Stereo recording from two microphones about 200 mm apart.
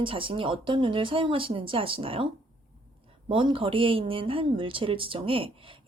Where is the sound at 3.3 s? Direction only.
25° right (ahead or behind).